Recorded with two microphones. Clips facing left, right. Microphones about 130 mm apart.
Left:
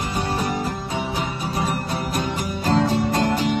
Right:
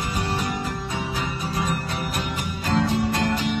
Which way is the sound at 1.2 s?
30° left (ahead or behind).